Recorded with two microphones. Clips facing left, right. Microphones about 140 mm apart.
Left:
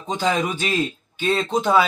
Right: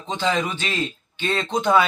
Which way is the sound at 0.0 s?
10° left (ahead or behind).